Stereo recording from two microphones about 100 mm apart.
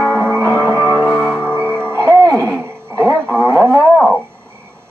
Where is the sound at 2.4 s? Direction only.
25° right (ahead or behind).